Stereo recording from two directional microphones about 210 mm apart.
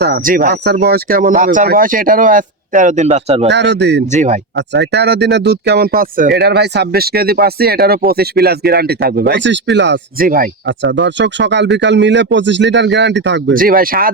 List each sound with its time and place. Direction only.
0.0 s speech: 45° right (ahead or behind); by 3.5 s 30° right (ahead or behind)
3.5 s a man's voice: 55° right (ahead or behind)
4.0 s speech: 35° right (ahead or behind)
4.5 s speech: 55° right (ahead or behind)
10.7 s a man's voice: 60° right (ahead or behind); by 14.1 s 45° right (ahead or behind)